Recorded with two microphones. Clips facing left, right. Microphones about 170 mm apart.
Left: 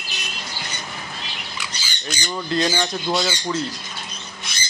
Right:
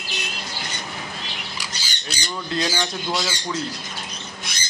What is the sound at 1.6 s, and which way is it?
Squawk, 35° right (ahead or behind).